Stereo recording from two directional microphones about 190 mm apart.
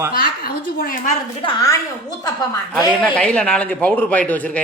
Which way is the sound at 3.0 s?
5° left (ahead or behind).